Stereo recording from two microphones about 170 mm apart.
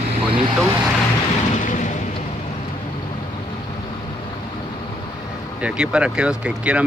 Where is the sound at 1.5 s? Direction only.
45° left (ahead or behind).